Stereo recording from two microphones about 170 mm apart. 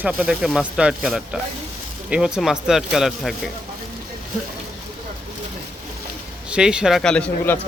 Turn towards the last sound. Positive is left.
turn(degrees=5)  # may be behind; listen again after turning